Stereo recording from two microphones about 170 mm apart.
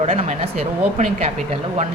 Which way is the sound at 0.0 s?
40° right (ahead or behind).